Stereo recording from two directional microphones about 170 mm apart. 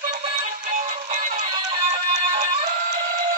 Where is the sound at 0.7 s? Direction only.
45° right (ahead or behind).